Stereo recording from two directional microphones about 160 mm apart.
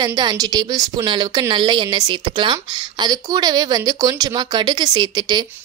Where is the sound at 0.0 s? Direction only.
25° right (ahead or behind).